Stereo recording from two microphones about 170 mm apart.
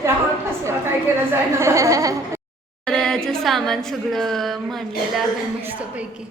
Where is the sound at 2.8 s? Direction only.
5° left (ahead or behind).